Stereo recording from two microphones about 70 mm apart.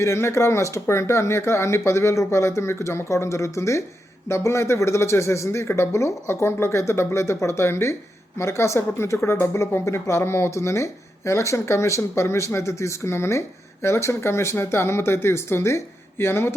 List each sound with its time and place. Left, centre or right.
0.0 s a woman's voice: left